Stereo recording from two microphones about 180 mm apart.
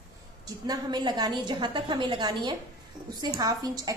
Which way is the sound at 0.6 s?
25° right (ahead or behind).